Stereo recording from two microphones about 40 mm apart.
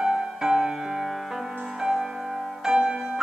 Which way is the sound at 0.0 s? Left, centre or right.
Right.